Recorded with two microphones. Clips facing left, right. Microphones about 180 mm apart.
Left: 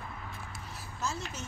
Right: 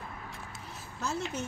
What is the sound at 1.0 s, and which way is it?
Speech, 60° right (ahead or behind).